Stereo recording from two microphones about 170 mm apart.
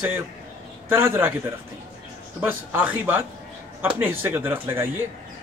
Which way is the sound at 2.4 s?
10° right (ahead or behind).